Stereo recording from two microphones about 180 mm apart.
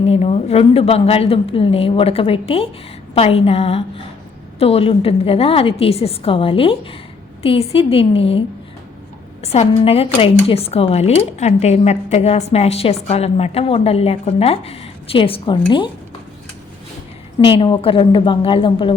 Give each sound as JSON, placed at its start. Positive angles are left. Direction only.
{"t": 0.0, "sound": "speech", "side_deg": 35}
{"t": 17.4, "sound": "a woman's voice", "side_deg": 30}